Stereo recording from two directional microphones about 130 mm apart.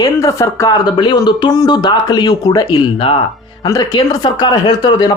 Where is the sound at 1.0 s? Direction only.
35° left (ahead or behind).